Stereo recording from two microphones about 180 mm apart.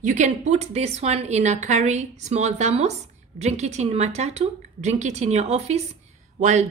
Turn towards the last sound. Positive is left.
turn(degrees=-40)  # may be behind; listen again after turning